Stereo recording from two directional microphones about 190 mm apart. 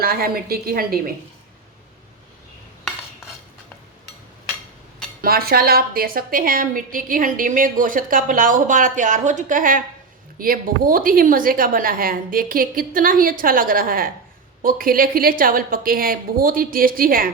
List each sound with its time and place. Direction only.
0.0 s a woman's voice: 50° right (ahead or behind)
5.2 s a woman's voice: 50° right (ahead or behind)